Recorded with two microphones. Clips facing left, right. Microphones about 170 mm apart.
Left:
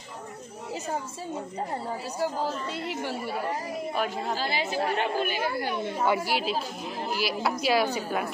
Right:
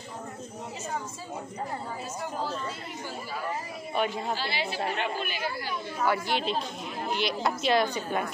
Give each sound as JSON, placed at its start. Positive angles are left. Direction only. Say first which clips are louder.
{"t": 2.7, "sound": "a woman's voice", "louder": "left 6 dB", "side_deg": 75}
{"t": 3.9, "sound": "a woman's voice", "louder": "right 3 dB", "side_deg": 0}
{"t": 4.4, "sound": "speech", "louder": "left 3 dB", "side_deg": 45}
{"t": 5.9, "sound": "a woman's voice", "louder": "left 1 dB", "side_deg": 20}
{"t": 6.2, "sound": "a woman's voice", "louder": "left 1 dB", "side_deg": 5}